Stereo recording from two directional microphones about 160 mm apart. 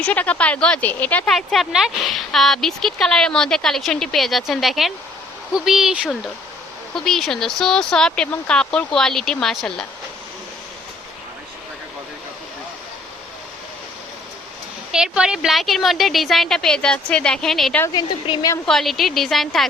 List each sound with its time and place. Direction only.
0.0 s speech: 10° left (ahead or behind)
14.9 s speech: 5° right (ahead or behind)
17.8 s speech: 25° left (ahead or behind)
18.6 s speech: centre (ahead or behind)